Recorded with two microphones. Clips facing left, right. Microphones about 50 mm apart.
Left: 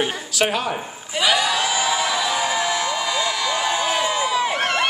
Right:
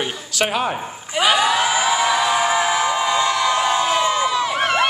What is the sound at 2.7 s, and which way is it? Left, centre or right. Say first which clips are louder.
Music: right 4 dB; centre.